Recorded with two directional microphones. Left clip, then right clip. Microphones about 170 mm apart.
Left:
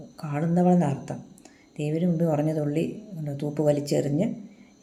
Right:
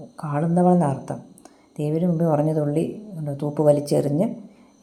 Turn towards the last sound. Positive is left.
turn(degrees=-20)  # may be behind; listen again after turning